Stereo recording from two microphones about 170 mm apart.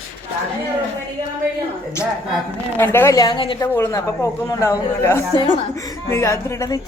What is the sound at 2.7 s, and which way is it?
Speech, 15° left (ahead or behind).